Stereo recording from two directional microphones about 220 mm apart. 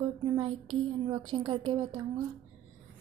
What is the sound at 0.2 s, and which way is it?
A woman's voice, 25° right (ahead or behind).